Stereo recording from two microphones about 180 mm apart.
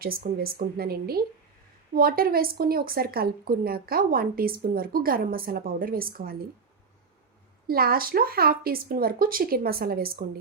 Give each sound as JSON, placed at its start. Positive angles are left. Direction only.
{"t": 0.0, "sound": "speech", "side_deg": -55}
{"t": 7.7, "sound": "speech", "side_deg": -55}